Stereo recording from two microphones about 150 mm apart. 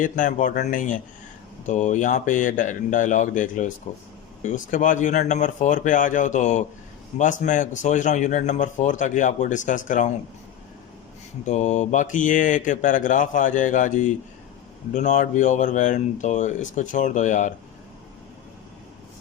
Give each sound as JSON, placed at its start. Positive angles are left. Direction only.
{"t": 0.0, "sound": "speech", "side_deg": 60}
{"t": 11.4, "sound": "speech", "side_deg": 55}